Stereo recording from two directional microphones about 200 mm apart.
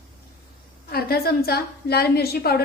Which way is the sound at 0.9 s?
50° left (ahead or behind).